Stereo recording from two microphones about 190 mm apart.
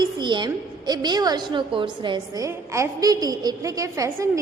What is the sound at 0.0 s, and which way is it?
A woman's voice, 25° right (ahead or behind).